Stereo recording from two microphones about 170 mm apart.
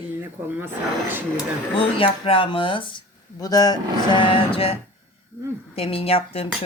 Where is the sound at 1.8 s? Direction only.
30° left (ahead or behind).